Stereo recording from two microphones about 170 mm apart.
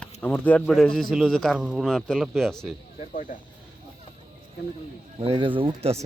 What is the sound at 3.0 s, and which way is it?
Speech, 50° left (ahead or behind).